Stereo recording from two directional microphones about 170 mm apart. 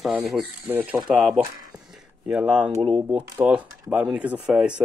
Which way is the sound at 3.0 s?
10° right (ahead or behind).